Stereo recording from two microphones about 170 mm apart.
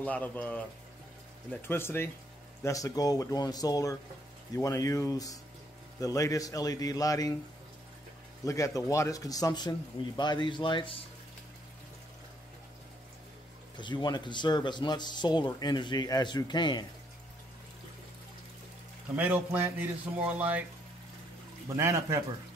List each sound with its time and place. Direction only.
0.0 s speech: 10° left (ahead or behind)
8.5 s speech: 20° left (ahead or behind)
13.7 s speech: 25° left (ahead or behind)
19.1 s speech: 10° right (ahead or behind)
21.7 s speech: 15° right (ahead or behind)